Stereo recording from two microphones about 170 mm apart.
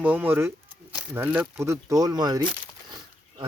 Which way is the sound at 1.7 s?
20° right (ahead or behind).